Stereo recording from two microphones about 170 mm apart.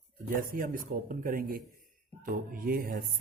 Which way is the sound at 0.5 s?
55° right (ahead or behind).